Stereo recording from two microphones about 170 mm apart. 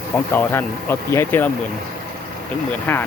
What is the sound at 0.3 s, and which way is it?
Speech, 15° left (ahead or behind).